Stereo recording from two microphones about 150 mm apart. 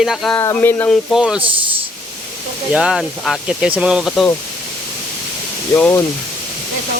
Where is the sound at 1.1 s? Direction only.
5° right (ahead or behind).